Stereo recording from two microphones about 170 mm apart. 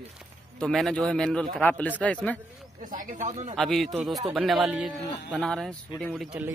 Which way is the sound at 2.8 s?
50° right (ahead or behind).